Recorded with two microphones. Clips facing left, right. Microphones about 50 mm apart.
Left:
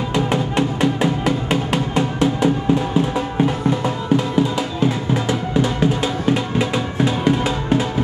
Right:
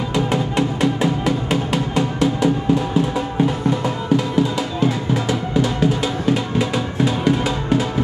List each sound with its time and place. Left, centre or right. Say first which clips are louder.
0.1 s music: even; left
4.4 s music: even; left